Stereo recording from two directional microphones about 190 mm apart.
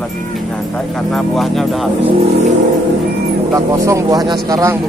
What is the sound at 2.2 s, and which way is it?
Vehicle, 35° right (ahead or behind).